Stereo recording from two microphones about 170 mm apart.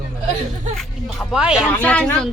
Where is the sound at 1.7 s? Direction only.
10° left (ahead or behind).